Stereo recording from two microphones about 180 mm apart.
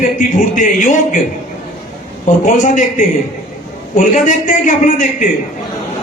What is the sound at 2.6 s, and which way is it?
Speech, 45° left (ahead or behind).